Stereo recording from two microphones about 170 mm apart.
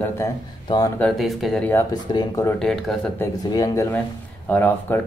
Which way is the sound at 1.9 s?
25° left (ahead or behind).